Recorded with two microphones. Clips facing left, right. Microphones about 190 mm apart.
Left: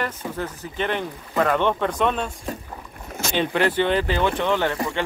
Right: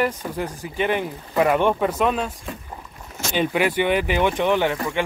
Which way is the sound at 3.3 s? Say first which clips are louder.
Right 1 dB; 10° right (ahead or behind).